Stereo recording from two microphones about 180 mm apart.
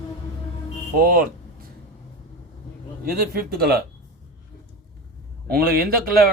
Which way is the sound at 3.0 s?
55° right (ahead or behind).